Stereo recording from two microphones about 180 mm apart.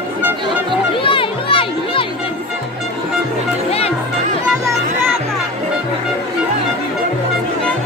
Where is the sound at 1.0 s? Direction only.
30° left (ahead or behind).